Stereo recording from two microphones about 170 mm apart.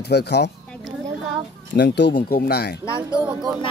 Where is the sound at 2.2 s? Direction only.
60° left (ahead or behind).